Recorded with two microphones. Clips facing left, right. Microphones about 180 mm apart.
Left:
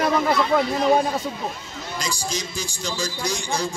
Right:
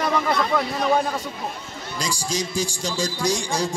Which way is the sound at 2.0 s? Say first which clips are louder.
Right 3 dB; 45° right (ahead or behind).